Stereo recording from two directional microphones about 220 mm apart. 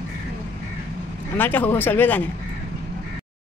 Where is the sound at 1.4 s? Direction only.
10° left (ahead or behind).